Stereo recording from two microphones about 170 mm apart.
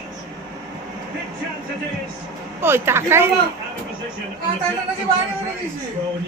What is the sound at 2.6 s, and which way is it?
Speech, 15° right (ahead or behind).